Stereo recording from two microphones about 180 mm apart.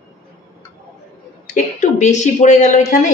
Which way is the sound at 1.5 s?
40° left (ahead or behind).